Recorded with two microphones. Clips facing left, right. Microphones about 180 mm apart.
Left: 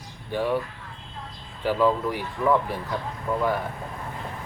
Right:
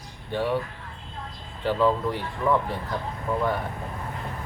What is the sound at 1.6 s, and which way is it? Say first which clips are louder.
Speech: left 1 dB; 10° left (ahead or behind).